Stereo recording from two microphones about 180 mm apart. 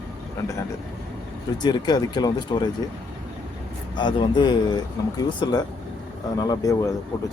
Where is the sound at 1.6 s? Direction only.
25° left (ahead or behind).